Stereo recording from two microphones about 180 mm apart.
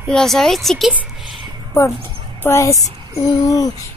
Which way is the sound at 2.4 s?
15° left (ahead or behind).